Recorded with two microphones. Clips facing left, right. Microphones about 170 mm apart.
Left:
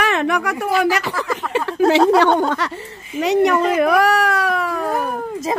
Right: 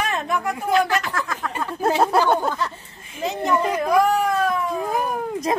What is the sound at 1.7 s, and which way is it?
Speech, 80° left.